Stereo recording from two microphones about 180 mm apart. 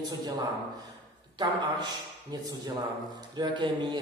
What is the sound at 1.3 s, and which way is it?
A man's voice, 25° right (ahead or behind).